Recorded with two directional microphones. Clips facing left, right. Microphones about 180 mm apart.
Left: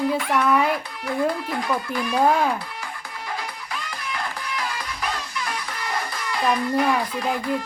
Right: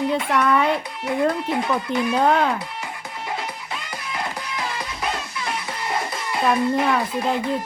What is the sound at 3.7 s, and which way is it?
Music, 25° right (ahead or behind).